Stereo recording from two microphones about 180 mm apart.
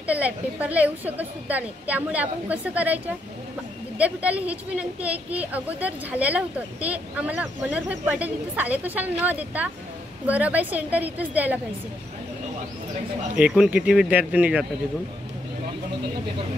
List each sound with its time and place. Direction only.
0.0 s a woman's voice: 10° right (ahead or behind)
4.0 s a woman's voice: 10° right (ahead or behind)
13.4 s a woman's voice: 5° right (ahead or behind)